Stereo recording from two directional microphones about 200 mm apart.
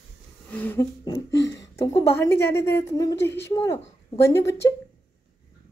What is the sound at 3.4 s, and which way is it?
Speech, 15° left (ahead or behind).